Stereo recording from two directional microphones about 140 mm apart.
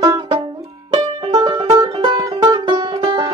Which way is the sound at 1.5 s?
25° right (ahead or behind).